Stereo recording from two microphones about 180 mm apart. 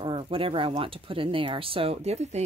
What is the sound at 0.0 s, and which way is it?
Speech, 30° right (ahead or behind).